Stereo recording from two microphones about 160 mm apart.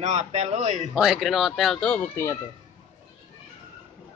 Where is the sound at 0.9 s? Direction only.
Centre (ahead or behind); by 2.4 s 15° left (ahead or behind).